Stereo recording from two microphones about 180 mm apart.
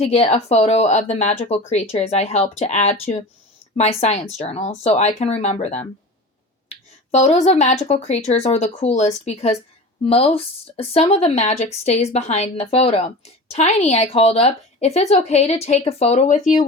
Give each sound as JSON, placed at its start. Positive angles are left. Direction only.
{"t": 0.0, "sound": "speech", "side_deg": 35}